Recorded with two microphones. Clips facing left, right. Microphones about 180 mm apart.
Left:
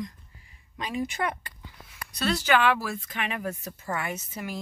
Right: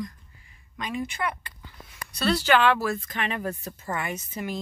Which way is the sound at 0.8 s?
35° left (ahead or behind).